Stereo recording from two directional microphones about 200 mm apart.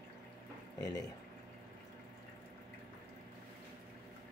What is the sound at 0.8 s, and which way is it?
Speech, 20° left (ahead or behind).